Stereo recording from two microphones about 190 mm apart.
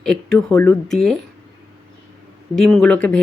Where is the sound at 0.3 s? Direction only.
10° left (ahead or behind).